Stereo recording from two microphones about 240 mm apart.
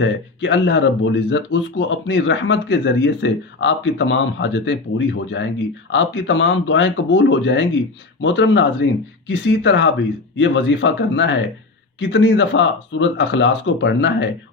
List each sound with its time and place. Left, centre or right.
0.0 s speech: left